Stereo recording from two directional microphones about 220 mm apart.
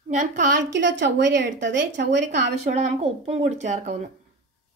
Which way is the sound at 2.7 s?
30° right (ahead or behind).